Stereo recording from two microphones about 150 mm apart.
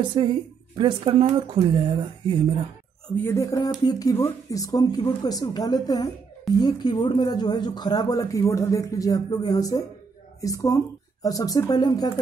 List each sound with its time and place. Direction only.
0.1 s speech: 35° right (ahead or behind)
3.3 s speech: 25° left (ahead or behind)